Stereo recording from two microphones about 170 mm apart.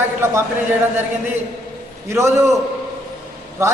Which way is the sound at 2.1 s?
15° right (ahead or behind).